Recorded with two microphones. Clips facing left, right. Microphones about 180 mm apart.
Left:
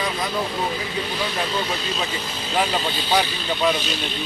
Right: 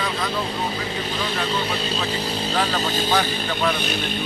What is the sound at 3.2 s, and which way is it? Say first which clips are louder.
Speech: left 1 dB; 50° right (ahead or behind).